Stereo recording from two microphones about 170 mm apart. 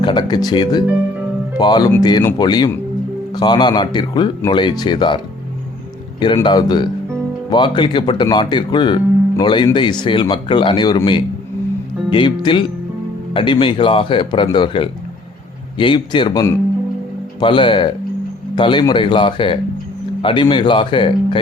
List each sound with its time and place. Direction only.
0.0 s speech: 25° left (ahead or behind)